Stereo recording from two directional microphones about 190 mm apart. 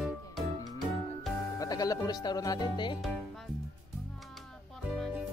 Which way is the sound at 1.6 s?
20° left (ahead or behind).